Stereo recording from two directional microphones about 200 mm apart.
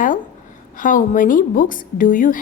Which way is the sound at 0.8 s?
40° left (ahead or behind).